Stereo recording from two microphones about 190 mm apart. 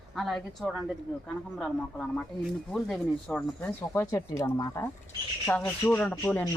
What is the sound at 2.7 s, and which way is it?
A woman's voice, 5° left (ahead or behind).